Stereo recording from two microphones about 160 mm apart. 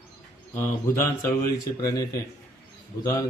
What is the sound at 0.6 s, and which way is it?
Speech, 15° left (ahead or behind).